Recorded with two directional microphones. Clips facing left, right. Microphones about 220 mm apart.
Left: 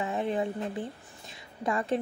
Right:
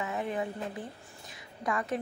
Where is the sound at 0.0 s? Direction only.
30° left (ahead or behind).